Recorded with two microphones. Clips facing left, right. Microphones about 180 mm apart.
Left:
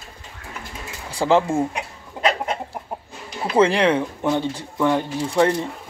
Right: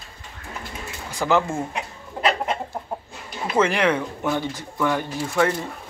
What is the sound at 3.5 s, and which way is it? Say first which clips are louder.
Speech: left 3 dB; 30° left (ahead or behind).